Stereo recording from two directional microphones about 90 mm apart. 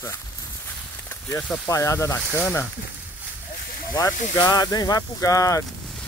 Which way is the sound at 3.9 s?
45° left (ahead or behind).